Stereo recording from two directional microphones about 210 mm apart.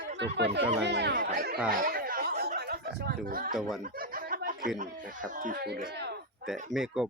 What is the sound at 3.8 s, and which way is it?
Snicker, 40° right (ahead or behind).